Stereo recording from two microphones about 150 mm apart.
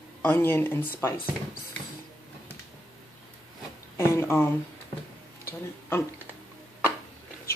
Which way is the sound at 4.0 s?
15° left (ahead or behind).